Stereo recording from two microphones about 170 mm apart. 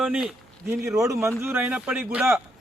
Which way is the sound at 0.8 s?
20° right (ahead or behind).